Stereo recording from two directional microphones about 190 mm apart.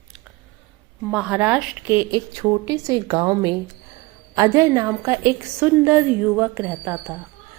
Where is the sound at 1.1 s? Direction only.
5° right (ahead or behind).